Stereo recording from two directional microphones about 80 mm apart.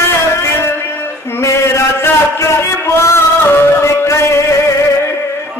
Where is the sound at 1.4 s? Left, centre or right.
Left.